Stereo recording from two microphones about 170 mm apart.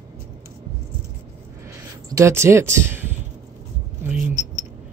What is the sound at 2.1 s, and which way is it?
Speech, 15° right (ahead or behind).